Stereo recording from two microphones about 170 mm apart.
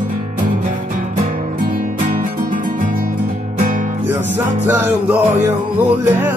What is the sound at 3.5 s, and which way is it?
Music, 50° right (ahead or behind).